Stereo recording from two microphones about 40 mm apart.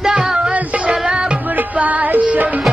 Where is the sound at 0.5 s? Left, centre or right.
Right.